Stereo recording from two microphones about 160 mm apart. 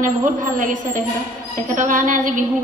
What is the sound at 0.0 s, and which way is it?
A woman's voice, 55° right (ahead or behind).